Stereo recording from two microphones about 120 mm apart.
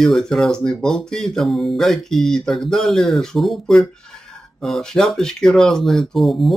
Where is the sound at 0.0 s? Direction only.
5° left (ahead or behind).